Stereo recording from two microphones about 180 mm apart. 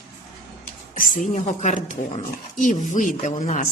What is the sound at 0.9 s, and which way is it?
Speech, 45° left (ahead or behind).